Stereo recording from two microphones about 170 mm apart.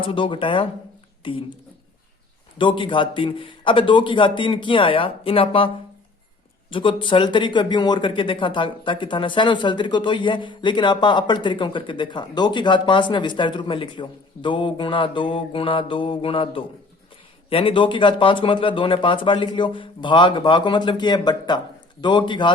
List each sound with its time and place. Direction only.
0.0 s speech: 30° left (ahead or behind)
2.6 s speech: 30° left (ahead or behind)